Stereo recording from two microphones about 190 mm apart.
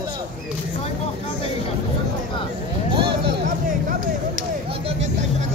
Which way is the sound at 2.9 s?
25° right (ahead or behind).